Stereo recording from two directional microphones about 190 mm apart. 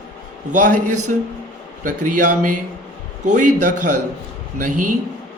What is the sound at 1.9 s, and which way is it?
Speech, 40° right (ahead or behind).